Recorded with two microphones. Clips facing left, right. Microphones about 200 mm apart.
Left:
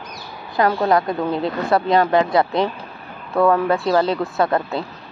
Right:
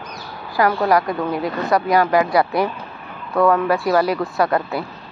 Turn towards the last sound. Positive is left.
turn(degrees=25)  # may be behind; listen again after turning